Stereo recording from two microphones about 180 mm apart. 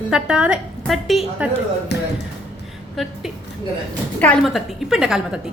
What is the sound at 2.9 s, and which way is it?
A woman's voice, centre (ahead or behind).